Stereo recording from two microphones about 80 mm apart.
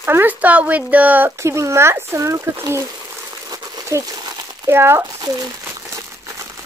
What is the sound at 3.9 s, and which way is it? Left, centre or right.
Speech, right.